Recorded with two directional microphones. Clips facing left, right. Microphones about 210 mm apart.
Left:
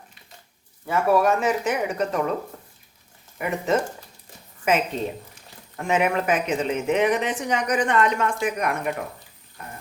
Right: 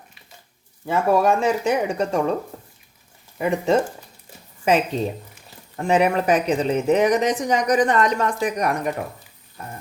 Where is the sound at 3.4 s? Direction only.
30° right (ahead or behind).